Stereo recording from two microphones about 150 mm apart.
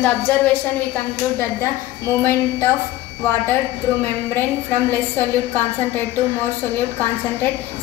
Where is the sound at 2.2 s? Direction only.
15° left (ahead or behind).